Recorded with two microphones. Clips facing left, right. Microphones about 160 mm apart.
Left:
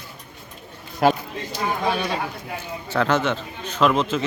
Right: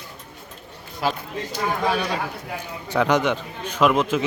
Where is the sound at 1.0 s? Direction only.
55° left (ahead or behind).